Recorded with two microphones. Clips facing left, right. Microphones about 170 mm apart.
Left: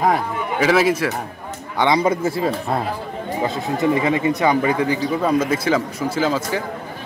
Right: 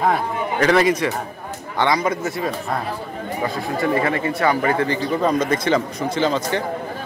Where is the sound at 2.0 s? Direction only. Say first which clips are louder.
Left 4 dB; 30° left (ahead or behind).